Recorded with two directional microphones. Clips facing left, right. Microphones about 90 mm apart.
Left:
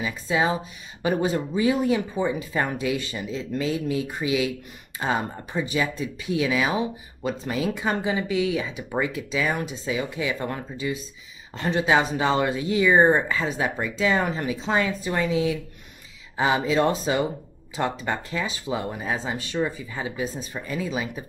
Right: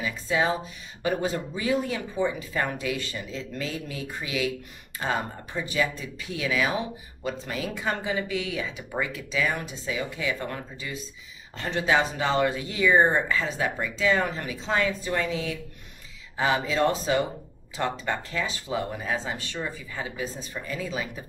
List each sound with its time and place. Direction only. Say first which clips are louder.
0.0 s speech: left 2 dB; 20° left (ahead or behind)